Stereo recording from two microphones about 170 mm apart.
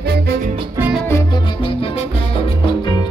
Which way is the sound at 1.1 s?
20° left (ahead or behind).